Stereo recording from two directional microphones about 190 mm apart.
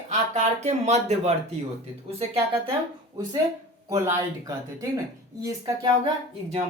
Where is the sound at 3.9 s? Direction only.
15° right (ahead or behind).